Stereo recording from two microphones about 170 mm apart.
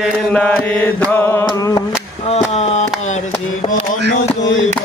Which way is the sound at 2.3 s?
40° left (ahead or behind).